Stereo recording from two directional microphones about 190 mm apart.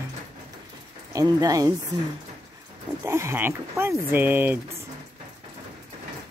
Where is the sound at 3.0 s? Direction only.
15° right (ahead or behind).